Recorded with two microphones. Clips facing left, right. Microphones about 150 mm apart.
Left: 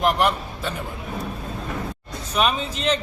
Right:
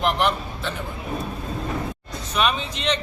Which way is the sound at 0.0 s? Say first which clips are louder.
Left 2 dB; 10° left (ahead or behind).